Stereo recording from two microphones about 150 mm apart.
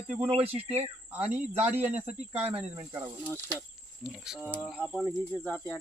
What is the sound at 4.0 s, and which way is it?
Speech, 5° right (ahead or behind).